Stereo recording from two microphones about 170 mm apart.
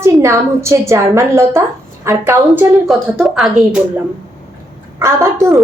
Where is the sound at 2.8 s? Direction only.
Centre (ahead or behind).